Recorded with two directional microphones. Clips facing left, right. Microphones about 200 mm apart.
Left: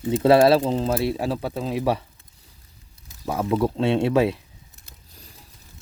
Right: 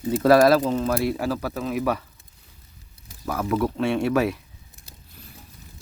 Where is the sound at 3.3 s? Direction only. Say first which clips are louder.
Left 2 dB; 25° left (ahead or behind).